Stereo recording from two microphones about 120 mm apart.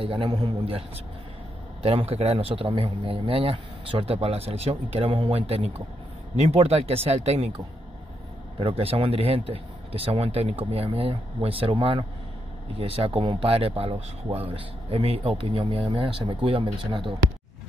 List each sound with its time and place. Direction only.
0.0 s speech: 45° right (ahead or behind)
0.7 s a man's voice: 55° right (ahead or behind)